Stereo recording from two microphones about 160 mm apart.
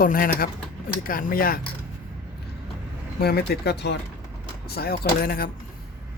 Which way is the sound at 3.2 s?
85° left.